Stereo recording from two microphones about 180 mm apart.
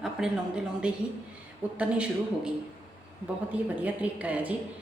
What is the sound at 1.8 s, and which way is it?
A woman's voice, 5° right (ahead or behind).